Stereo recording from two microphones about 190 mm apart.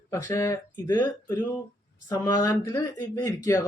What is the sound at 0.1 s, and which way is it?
Speech, 15° left (ahead or behind).